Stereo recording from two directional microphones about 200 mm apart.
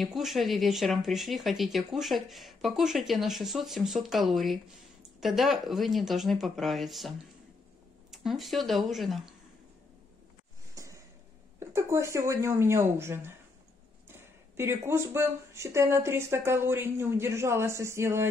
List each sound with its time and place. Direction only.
0.0 s speech: centre (ahead or behind)
10.7 s a sound: 15° right (ahead or behind)
11.6 s speech: 15° right (ahead or behind)
14.6 s speech: 10° right (ahead or behind)